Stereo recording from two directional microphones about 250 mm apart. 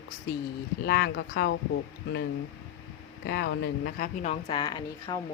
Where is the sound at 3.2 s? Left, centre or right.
Left.